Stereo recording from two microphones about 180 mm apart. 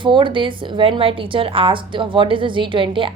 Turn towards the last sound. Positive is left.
turn(degrees=-30)  # may be behind; listen again after turning